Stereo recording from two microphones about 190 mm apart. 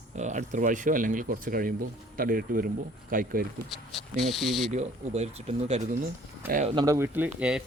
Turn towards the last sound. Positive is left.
turn(degrees=-5)  # may be behind; listen again after turning